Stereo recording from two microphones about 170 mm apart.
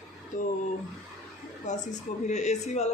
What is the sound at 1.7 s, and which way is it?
Speech, 45° left (ahead or behind).